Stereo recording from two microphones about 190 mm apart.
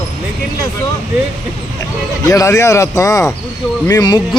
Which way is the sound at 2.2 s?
15° left (ahead or behind).